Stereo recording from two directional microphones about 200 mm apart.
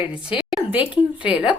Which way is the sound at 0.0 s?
5° right (ahead or behind).